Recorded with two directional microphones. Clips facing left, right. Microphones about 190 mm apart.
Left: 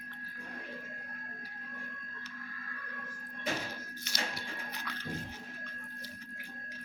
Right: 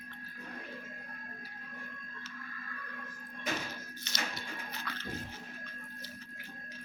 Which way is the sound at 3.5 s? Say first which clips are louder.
Left 1 dB; 30° left (ahead or behind).